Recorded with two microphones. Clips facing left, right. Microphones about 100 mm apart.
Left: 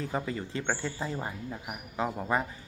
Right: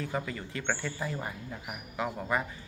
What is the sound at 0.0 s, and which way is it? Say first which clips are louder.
Speech: left 2 dB; 30° left (ahead or behind).